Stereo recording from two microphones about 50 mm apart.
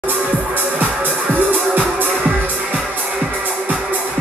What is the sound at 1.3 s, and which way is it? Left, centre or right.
Music, right.